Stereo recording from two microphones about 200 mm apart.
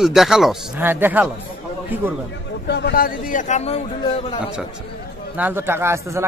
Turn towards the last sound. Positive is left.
turn(degrees=-15)  # may be behind; listen again after turning